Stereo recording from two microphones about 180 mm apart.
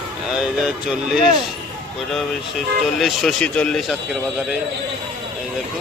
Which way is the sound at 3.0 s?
Centre (ahead or behind).